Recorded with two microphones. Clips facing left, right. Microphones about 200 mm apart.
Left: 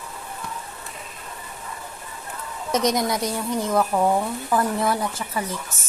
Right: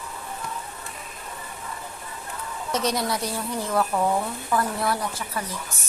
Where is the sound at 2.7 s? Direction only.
20° left (ahead or behind).